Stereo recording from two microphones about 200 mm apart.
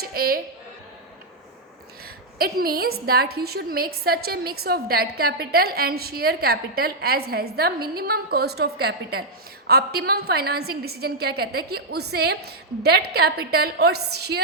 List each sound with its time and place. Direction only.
0.0 s a woman's voice: 50° right (ahead or behind)
2.4 s a woman's voice: 50° right (ahead or behind)